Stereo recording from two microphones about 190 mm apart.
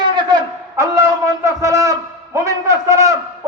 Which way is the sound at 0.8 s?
15° right (ahead or behind).